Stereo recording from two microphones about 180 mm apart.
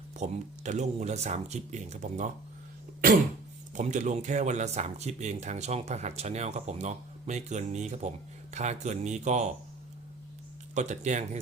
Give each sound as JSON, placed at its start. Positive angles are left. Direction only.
{"t": 0.2, "sound": "speech", "side_deg": -40}
{"t": 3.8, "sound": "speech", "side_deg": -40}
{"t": 10.8, "sound": "speech", "side_deg": -40}